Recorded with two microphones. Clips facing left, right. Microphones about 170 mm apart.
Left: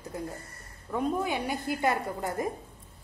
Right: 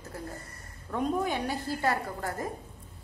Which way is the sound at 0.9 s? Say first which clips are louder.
Even; 10° left (ahead or behind).